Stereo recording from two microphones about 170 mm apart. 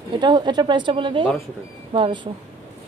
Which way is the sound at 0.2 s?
25° right (ahead or behind).